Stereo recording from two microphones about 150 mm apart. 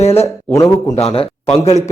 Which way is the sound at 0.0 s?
45° left (ahead or behind).